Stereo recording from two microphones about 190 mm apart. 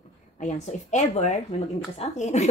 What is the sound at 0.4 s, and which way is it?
A woman's voice, 40° left (ahead or behind).